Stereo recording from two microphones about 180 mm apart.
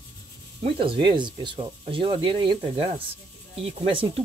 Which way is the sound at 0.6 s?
30° right (ahead or behind).